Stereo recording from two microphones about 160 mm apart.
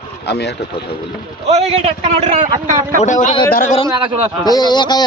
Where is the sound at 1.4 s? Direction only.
45° right (ahead or behind).